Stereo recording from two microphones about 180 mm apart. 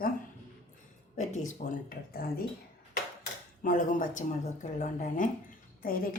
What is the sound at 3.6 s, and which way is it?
Speech, 50° left (ahead or behind).